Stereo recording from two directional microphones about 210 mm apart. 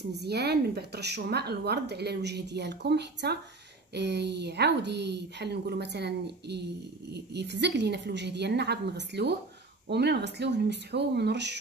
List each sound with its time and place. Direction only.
0.2 s speech: 50° right (ahead or behind)